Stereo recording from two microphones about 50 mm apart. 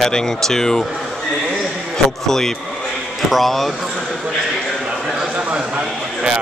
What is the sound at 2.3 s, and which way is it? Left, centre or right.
A man's voice, centre.